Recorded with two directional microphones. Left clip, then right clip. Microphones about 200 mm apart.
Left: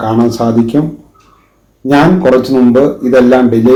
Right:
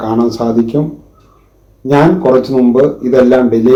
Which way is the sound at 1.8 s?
25° right (ahead or behind).